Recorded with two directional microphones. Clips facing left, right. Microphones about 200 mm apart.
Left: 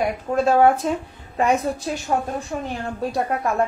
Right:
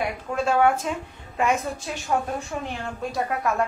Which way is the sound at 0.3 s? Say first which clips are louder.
Left 5 dB; 40° left (ahead or behind).